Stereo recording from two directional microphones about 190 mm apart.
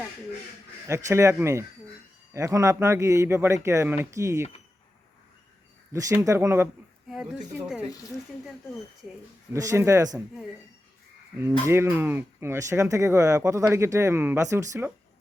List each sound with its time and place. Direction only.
0.9 s speech: 15° right (ahead or behind)
5.9 s speech: 15° right (ahead or behind)
7.1 s speech: centre (ahead or behind)
9.5 s speech: 15° right (ahead or behind)
11.6 s speech: 15° right (ahead or behind)